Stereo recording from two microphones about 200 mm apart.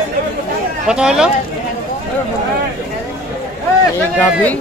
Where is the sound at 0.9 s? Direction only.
5° right (ahead or behind).